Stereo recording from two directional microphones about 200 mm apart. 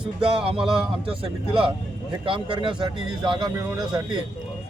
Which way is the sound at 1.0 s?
25° right (ahead or behind).